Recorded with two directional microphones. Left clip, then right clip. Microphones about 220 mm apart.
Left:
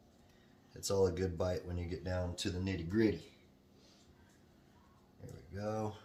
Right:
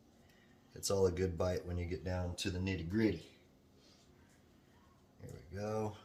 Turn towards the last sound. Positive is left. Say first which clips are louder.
# even
turn(degrees=-15)  # may be behind; listen again after turning